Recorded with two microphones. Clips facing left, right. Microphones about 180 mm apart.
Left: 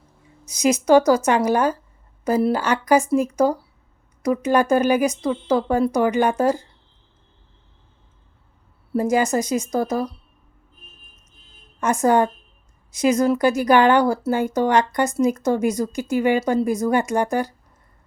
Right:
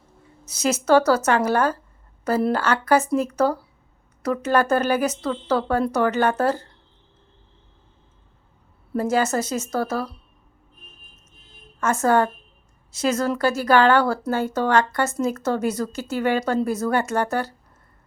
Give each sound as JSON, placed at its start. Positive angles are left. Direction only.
{"t": 0.4, "sound": "speech", "side_deg": 15}
{"t": 8.9, "sound": "speech", "side_deg": 15}
{"t": 11.8, "sound": "speech", "side_deg": 15}